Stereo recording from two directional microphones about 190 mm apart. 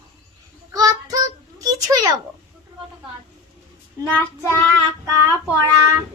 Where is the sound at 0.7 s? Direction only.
20° right (ahead or behind).